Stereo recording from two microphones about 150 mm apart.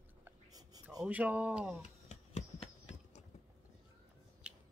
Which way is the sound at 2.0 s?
45° left (ahead or behind).